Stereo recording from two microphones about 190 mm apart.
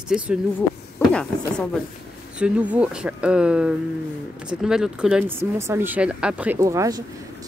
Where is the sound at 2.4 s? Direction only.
5° right (ahead or behind).